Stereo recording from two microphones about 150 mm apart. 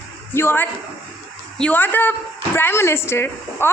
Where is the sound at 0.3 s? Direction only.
15° left (ahead or behind).